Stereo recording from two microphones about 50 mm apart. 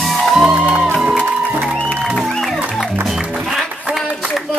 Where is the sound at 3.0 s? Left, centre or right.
Centre.